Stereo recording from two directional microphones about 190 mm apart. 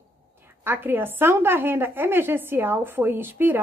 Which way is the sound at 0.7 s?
10° right (ahead or behind).